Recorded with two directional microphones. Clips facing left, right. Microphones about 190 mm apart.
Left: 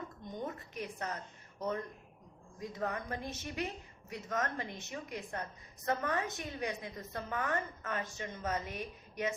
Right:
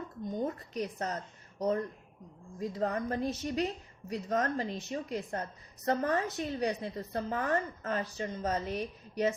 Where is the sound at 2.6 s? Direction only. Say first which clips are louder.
Right 6 dB; 35° right (ahead or behind).